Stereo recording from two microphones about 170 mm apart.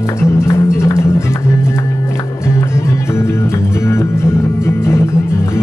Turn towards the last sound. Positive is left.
turn(degrees=15)  # may be behind; listen again after turning